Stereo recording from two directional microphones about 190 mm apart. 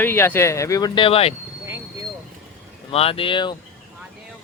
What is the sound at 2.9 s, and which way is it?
Speech, 30° left (ahead or behind).